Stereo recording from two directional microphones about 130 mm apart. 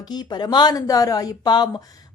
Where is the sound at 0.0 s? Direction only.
30° left (ahead or behind).